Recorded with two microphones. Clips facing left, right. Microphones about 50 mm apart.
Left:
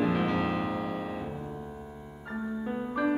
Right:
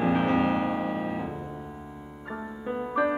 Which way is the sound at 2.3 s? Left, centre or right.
Centre.